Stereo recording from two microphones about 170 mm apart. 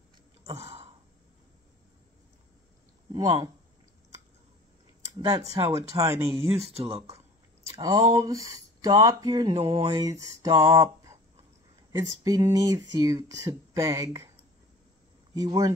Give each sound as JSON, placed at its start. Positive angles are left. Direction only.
{"t": 0.6, "sound": "sigh", "side_deg": -35}
{"t": 5.2, "sound": "speech", "side_deg": -20}
{"t": 6.7, "sound": "a sound", "side_deg": -35}
{"t": 7.8, "sound": "speech", "side_deg": -20}
{"t": 9.6, "sound": "a sound", "side_deg": -35}
{"t": 9.8, "sound": "speech", "side_deg": -20}
{"t": 15.3, "sound": "speech", "side_deg": -20}